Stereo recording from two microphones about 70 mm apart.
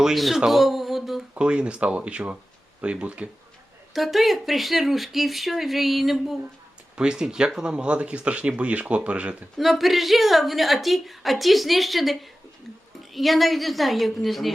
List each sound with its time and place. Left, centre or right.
0.0 s a woman's voice: centre
1.4 s speech: centre
3.9 s a woman's voice: centre
9.6 s a woman's voice: centre
13.1 s a woman's voice: centre